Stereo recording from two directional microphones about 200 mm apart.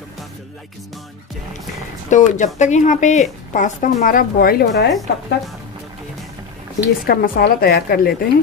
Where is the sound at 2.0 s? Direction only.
35° left (ahead or behind).